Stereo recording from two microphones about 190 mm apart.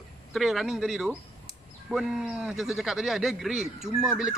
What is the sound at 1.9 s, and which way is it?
Speech, centre (ahead or behind).